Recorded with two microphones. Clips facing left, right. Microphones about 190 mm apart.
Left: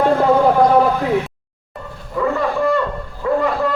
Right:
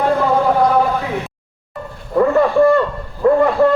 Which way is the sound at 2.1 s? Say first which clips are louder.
Right 6 dB; 50° right (ahead or behind).